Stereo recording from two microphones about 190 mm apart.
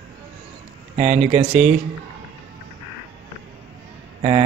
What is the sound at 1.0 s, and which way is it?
Speech, 35° right (ahead or behind).